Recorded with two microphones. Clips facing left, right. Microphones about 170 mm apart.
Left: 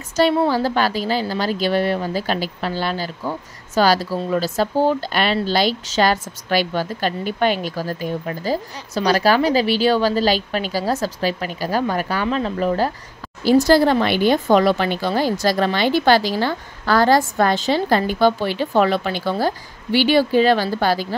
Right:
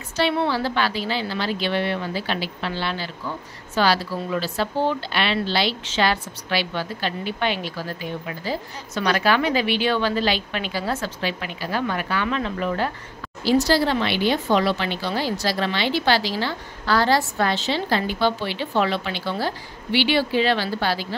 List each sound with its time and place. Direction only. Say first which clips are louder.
0.1 s a woman's voice: left 5 dB; 45° left (ahead or behind)
13.4 s speech: left 5 dB; 50° left (ahead or behind)